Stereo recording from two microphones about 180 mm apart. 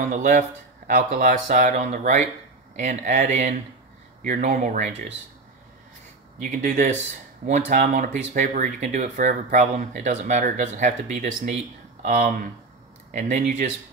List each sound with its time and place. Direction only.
0.0 s speech: 45° right (ahead or behind)
6.4 s speech: 45° right (ahead or behind)